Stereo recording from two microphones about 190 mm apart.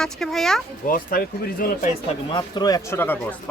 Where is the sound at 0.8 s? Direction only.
50° left (ahead or behind).